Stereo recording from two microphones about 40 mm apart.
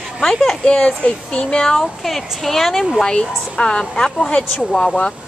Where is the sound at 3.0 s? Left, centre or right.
Left.